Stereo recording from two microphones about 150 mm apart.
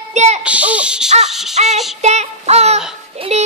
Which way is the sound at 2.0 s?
50° right (ahead or behind).